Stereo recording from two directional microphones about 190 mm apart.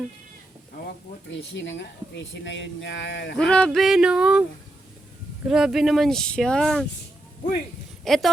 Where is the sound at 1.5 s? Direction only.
70° left (ahead or behind).